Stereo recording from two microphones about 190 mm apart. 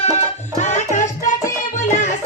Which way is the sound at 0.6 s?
40° left (ahead or behind).